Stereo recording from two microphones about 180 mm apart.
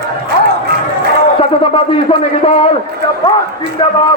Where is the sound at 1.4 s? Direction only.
30° left (ahead or behind).